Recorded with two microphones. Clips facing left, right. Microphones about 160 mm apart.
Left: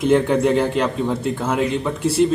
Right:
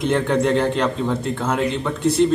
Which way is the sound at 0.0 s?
5° left (ahead or behind).